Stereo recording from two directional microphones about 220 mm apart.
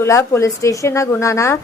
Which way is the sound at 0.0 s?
15° left (ahead or behind).